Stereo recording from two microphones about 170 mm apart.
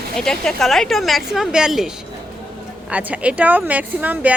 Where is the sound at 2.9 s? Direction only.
10° right (ahead or behind).